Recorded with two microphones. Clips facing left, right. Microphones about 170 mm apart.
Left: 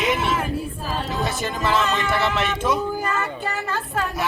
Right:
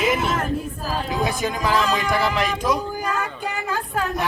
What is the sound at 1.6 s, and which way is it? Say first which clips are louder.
Music: even; 10° right (ahead or behind).